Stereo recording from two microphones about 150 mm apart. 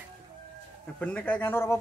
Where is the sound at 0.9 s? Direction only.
10° left (ahead or behind).